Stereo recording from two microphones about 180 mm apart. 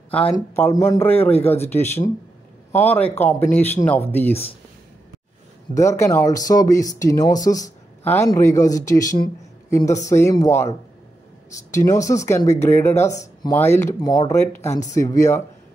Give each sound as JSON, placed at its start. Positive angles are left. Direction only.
{"t": 0.1, "sound": "speech", "side_deg": 10}
{"t": 5.8, "sound": "speech", "side_deg": 15}
{"t": 11.7, "sound": "speech", "side_deg": 15}